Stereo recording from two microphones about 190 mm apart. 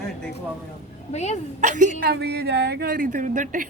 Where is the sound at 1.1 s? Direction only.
35° left (ahead or behind).